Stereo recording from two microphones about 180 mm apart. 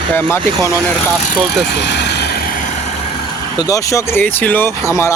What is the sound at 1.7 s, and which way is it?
Vehicle, 70° left (ahead or behind).